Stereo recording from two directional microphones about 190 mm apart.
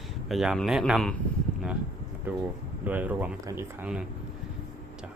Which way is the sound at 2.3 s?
10° right (ahead or behind).